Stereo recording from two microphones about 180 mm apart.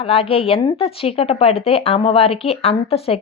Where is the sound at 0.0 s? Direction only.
30° left (ahead or behind).